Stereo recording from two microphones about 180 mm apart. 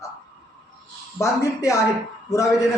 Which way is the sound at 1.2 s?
20° left (ahead or behind).